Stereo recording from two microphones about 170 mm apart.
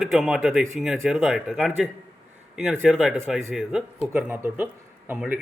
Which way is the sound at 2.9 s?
5° right (ahead or behind).